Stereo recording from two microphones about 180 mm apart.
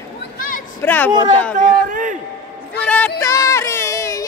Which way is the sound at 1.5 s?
45° right (ahead or behind).